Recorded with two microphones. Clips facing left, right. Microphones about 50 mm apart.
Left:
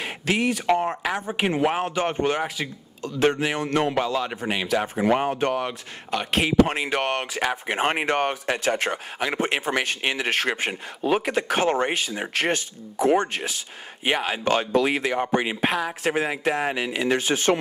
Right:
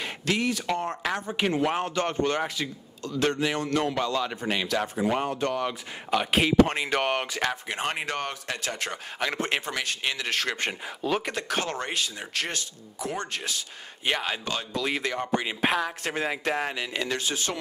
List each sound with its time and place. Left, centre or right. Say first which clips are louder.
0.0 s a man's voice: left 3 dB; centre
6.0 s speech: even; centre
7.6 s speech: left 7 dB; left
9.2 s a man's voice: left 3 dB; centre
9.7 s speech: left 5 dB; left
10.6 s a man's voice: left 3 dB; centre; by 13.2 s left
13.2 s a man's voice: left 5 dB; left
14.4 s speech: left 10 dB; left
14.9 s a man's voice: left 4 dB; centre
15.1 s speech: left 5 dB; left
15.6 s a man's voice: left 2 dB; centre
17.1 s speech: left 8 dB; left